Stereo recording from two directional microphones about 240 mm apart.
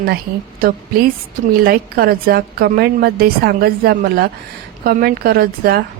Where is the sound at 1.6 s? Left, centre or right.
Right.